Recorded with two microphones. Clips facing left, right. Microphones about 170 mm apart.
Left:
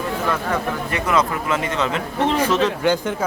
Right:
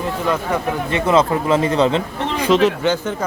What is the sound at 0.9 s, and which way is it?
A man's voice, 25° right (ahead or behind).